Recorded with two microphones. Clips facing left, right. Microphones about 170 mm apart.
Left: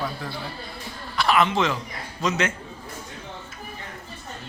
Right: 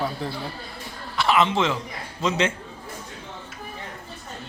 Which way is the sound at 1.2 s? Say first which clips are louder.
Even; 25° right (ahead or behind).